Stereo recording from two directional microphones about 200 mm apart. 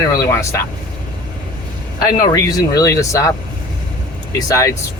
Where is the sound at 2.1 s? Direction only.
20° left (ahead or behind).